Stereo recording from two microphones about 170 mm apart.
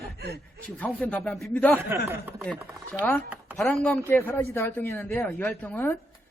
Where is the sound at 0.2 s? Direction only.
70° right (ahead or behind).